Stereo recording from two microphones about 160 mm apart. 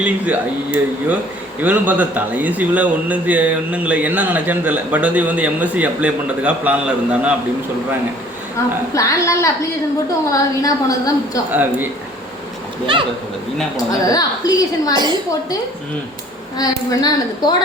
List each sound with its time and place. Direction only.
0.0 s a man's voice: 10° right (ahead or behind)
8.9 s a woman's voice: 20° left (ahead or behind)
13.7 s a woman's voice: 25° left (ahead or behind)
16.6 s a woman's voice: 25° left (ahead or behind)